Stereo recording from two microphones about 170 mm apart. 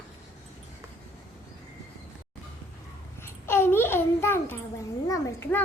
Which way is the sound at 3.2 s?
15° left (ahead or behind).